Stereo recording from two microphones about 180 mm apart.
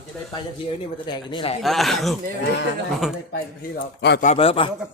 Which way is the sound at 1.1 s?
25° left (ahead or behind).